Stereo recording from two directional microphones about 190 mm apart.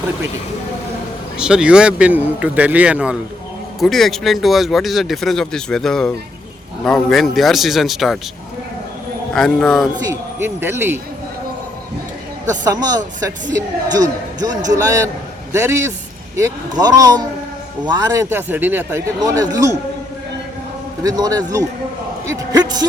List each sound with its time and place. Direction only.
1.4 s speech: 5° right (ahead or behind)
9.3 s speech: 5° left (ahead or behind)
10.1 s speech: 10° right (ahead or behind)
12.6 s a man's voice: 20° right (ahead or behind)
21.0 s a man's voice: 20° right (ahead or behind)